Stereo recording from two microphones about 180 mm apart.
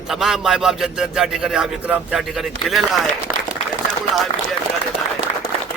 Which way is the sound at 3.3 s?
20° right (ahead or behind).